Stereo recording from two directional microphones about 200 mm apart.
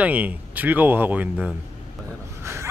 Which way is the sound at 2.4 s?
15° right (ahead or behind).